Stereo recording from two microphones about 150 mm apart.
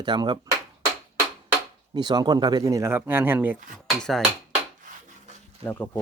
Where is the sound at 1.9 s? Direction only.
30° right (ahead or behind); by 3.5 s 10° right (ahead or behind).